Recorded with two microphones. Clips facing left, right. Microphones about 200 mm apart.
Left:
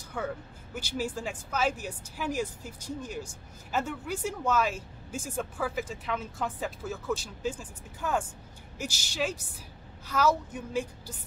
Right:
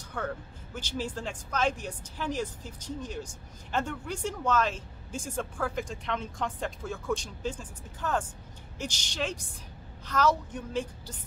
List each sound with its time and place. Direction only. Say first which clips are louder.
0.2 s speech: left 1 dB; 10° left (ahead or behind)